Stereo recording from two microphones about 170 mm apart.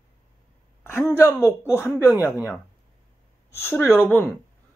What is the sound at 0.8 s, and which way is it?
Speech, 15° left (ahead or behind).